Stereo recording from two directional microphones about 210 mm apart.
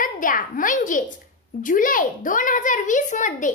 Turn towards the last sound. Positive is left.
turn(degrees=35)  # may be behind; listen again after turning